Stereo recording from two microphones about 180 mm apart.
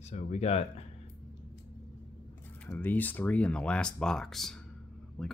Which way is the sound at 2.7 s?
10° left (ahead or behind).